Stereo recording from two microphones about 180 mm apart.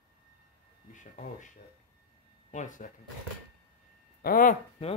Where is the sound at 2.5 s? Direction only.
45° left (ahead or behind).